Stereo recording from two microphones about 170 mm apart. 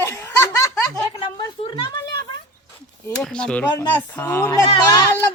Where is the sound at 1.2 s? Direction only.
30° left (ahead or behind).